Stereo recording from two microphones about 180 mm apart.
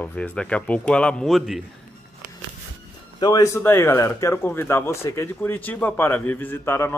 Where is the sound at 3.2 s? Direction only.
20° left (ahead or behind).